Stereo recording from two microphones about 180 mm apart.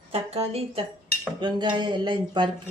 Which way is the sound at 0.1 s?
35° right (ahead or behind).